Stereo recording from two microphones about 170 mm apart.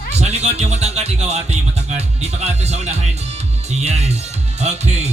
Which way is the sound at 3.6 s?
40° right (ahead or behind).